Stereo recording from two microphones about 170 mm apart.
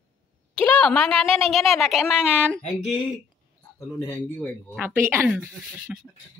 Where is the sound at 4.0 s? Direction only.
10° left (ahead or behind).